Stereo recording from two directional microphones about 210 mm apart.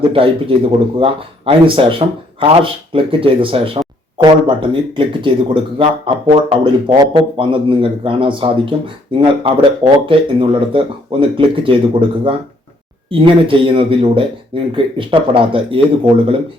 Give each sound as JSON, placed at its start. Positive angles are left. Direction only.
{"t": 0.1, "sound": "speech", "side_deg": -25}